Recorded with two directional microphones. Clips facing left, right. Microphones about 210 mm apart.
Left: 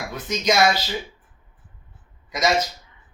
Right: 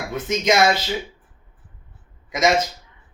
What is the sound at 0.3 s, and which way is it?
Speech, 25° right (ahead or behind).